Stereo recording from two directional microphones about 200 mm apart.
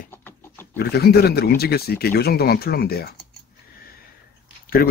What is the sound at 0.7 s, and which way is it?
Speech, 50° left (ahead or behind).